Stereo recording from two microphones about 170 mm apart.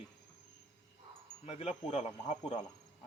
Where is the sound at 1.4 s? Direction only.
40° left (ahead or behind).